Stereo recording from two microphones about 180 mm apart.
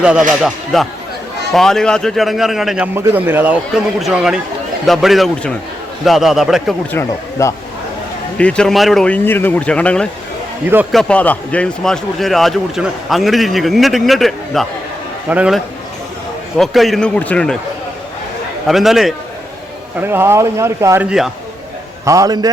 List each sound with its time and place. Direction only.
0.0 s a man's voice: 5° right (ahead or behind)
6.9 s speech: 15° left (ahead or behind)
8.4 s a man's voice: 5° left (ahead or behind)
18.7 s a man's voice: centre (ahead or behind)
20.0 s a man's voice: 10° right (ahead or behind)